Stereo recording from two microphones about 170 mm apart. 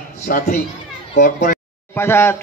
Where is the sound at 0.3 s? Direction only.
60° left (ahead or behind).